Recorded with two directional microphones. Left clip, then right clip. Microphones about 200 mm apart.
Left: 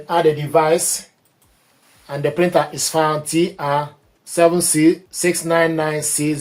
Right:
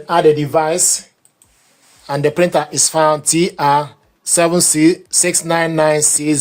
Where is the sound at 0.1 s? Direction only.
55° right (ahead or behind).